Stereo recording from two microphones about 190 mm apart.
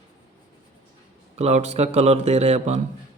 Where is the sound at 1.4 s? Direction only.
35° right (ahead or behind).